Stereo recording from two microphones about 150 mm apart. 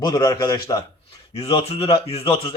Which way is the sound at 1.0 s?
40° left (ahead or behind).